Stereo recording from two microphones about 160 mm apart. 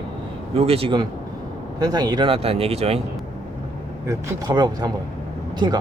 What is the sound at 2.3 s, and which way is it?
Speech, 40° right (ahead or behind).